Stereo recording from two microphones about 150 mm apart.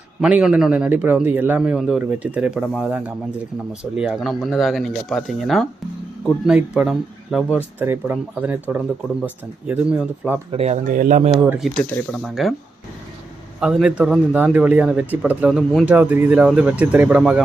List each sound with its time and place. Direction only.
0.2 s speech: 5° right (ahead or behind)
7.8 s speech: 15° right (ahead or behind)
10.5 s speech: 45° right (ahead or behind)
10.9 s speech: 65° right (ahead or behind)
11.6 s speech: 5° left (ahead or behind)
13.6 s speech: 5° right (ahead or behind)